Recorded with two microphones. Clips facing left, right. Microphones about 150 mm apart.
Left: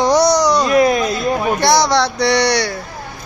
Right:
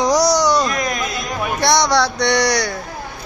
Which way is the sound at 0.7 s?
30° left (ahead or behind).